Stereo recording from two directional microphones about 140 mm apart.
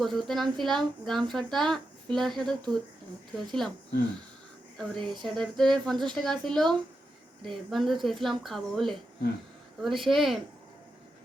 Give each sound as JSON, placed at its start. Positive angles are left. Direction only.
{"t": 0.0, "sound": "a woman's voice", "side_deg": 0}
{"t": 4.8, "sound": "a woman's voice", "side_deg": 0}